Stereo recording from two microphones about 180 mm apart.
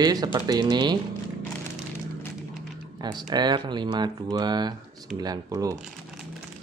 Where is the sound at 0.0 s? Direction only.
20° right (ahead or behind).